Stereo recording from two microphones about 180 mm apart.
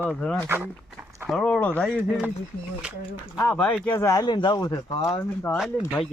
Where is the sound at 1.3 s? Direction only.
5° left (ahead or behind).